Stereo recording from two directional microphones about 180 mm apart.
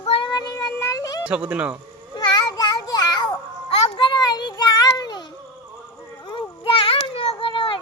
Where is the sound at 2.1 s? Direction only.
25° left (ahead or behind).